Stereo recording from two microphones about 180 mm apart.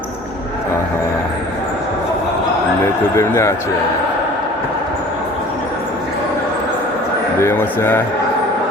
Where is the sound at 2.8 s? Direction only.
15° left (ahead or behind).